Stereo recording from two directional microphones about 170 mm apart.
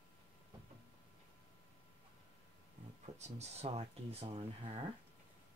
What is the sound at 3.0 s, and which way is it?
Speech, 40° right (ahead or behind).